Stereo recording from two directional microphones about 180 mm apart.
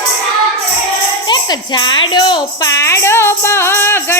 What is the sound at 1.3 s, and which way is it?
A woman's voice, 25° left (ahead or behind).